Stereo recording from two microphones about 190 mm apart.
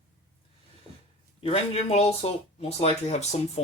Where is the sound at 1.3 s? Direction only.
30° left (ahead or behind).